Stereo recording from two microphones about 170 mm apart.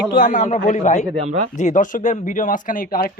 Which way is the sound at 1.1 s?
40° right (ahead or behind).